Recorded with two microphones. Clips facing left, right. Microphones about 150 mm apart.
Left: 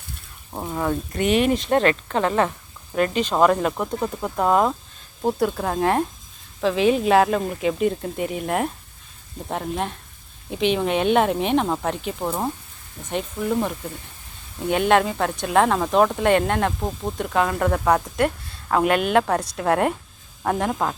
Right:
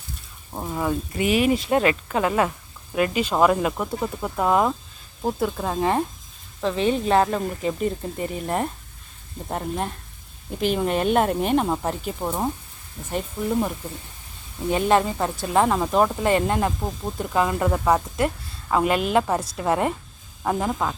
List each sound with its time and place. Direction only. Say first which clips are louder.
0.5 s a woman's voice: left 1 dB; centre (ahead or behind)
14.8 s a woman's voice: left 1 dB; centre (ahead or behind)
16.8 s a woman's voice: left 2 dB; 5° left (ahead or behind)